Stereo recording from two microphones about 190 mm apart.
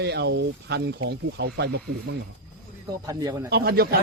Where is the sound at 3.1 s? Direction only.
20° right (ahead or behind).